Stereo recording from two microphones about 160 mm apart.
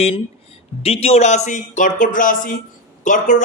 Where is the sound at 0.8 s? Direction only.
40° left (ahead or behind).